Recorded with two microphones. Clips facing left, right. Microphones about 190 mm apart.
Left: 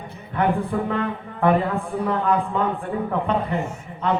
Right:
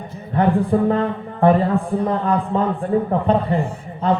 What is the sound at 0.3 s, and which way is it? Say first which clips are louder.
A man's voice: right 5 dB; 35° right (ahead or behind).